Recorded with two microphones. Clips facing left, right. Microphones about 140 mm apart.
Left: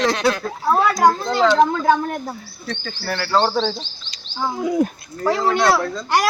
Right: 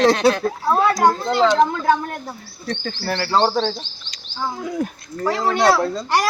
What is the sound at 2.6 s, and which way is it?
Speech, 30° right (ahead or behind).